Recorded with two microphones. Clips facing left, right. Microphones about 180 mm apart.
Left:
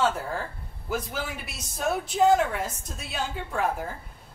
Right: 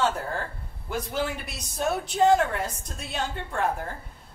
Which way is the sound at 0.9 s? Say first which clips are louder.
Right 2 dB; 5° left (ahead or behind).